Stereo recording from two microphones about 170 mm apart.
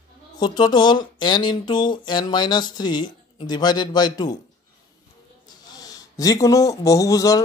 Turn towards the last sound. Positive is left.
turn(degrees=20)  # may be behind; listen again after turning